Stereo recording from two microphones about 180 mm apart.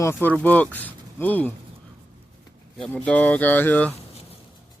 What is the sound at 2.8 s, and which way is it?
Speech, 5° left (ahead or behind).